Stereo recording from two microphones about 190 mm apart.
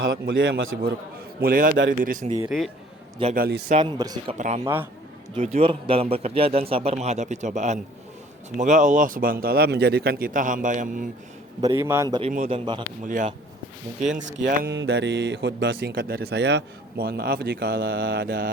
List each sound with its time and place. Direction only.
0.0 s a man's voice: 75° right (ahead or behind)
1.4 s speech: 50° right (ahead or behind)
2.2 s a man's voice: 25° right (ahead or behind)
2.5 s a man's voice: centre (ahead or behind)
3.3 s speech: 50° right (ahead or behind)
3.8 s a man's voice: 20° right (ahead or behind)
4.4 s a man's voice: 40° right (ahead or behind)
4.6 s a man's voice: 10° right (ahead or behind)
5.3 s a man's voice: 35° right (ahead or behind)
11.6 s a man's voice: 15° right (ahead or behind)
13.1 s speech: 45° right (ahead or behind)
14.2 s speech: 70° right (ahead or behind); by 18.5 s 55° right (ahead or behind)